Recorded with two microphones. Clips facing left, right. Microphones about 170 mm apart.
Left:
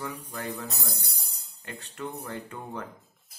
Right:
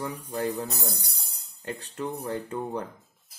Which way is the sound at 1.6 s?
35° right (ahead or behind).